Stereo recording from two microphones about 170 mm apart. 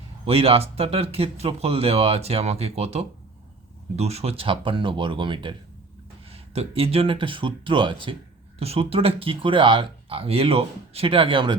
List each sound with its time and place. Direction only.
0.3 s speech: 35° right (ahead or behind)